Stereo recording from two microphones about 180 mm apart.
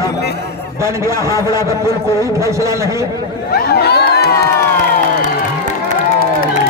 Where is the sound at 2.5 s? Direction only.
15° right (ahead or behind).